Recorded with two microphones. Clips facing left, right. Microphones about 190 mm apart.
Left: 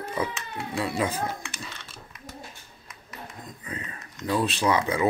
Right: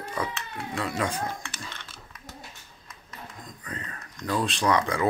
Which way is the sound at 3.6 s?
10° left (ahead or behind).